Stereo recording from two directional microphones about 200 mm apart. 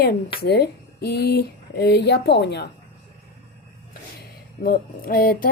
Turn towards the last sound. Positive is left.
turn(degrees=45)  # may be behind; listen again after turning